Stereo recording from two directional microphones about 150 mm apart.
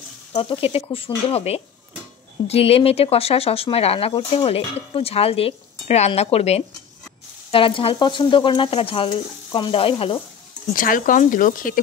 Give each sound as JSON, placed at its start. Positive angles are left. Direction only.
{"t": 0.3, "sound": "speech", "side_deg": 40}
{"t": 10.7, "sound": "speech", "side_deg": 65}